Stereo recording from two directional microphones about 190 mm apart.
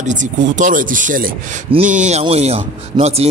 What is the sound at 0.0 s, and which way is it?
Speech, 40° right (ahead or behind).